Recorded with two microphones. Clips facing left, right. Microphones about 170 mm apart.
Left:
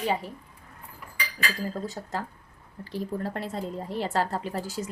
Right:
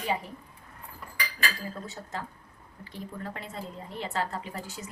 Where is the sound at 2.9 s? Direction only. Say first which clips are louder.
Left 7 dB; 35° left (ahead or behind).